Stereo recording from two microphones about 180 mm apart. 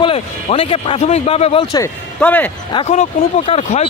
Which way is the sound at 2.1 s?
10° left (ahead or behind).